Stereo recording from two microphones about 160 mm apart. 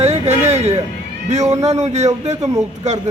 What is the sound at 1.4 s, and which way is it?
Speech, 20° right (ahead or behind).